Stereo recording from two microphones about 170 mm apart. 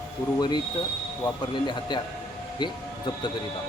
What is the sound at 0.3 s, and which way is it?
Speech, 25° left (ahead or behind).